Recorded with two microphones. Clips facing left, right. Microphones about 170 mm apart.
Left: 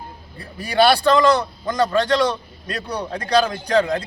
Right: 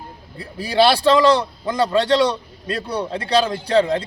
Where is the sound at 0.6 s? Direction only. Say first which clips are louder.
Right 1 dB; 30° right (ahead or behind).